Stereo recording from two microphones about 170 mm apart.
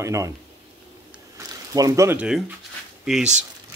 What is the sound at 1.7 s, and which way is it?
Speech, 20° right (ahead or behind).